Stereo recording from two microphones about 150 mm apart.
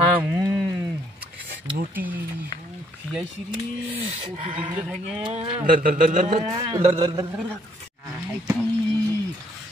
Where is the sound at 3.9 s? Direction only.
40° right (ahead or behind).